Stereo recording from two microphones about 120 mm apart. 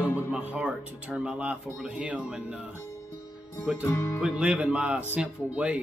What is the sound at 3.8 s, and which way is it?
Music, 20° left (ahead or behind).